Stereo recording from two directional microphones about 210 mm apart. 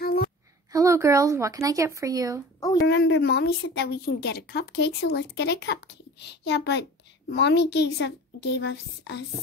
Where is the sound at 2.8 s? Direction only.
60° left (ahead or behind).